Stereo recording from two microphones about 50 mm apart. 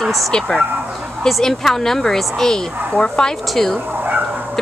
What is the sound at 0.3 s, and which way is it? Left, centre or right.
A woman's voice, centre.